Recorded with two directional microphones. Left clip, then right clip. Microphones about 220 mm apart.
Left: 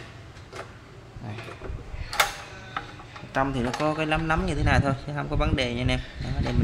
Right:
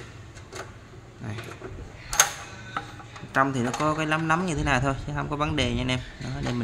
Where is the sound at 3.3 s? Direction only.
10° right (ahead or behind).